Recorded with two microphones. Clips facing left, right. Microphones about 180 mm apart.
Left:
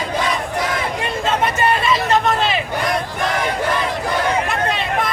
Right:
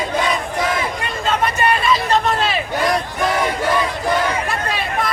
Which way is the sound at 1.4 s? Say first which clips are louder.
Right 1 dB; 25° left (ahead or behind).